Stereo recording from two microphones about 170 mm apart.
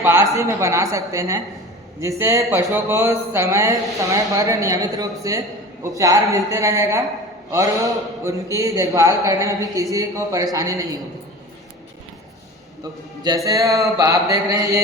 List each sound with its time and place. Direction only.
0.0 s a man's voice: 15° right (ahead or behind)
13.2 s a man's voice: 20° right (ahead or behind)